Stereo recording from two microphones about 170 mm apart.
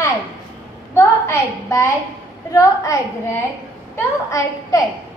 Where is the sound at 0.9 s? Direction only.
15° left (ahead or behind).